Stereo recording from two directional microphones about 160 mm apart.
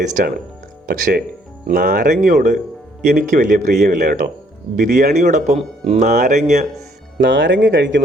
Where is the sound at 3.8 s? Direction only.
55° right (ahead or behind).